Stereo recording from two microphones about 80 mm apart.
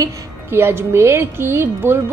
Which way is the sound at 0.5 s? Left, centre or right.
Right.